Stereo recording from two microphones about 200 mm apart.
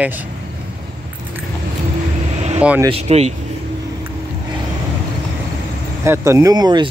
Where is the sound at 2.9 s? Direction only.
30° right (ahead or behind).